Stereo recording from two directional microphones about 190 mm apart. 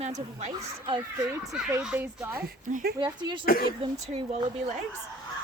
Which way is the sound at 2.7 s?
45° right (ahead or behind).